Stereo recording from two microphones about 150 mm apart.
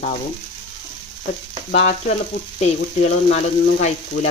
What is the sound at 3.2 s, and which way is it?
Speech, 50° left (ahead or behind).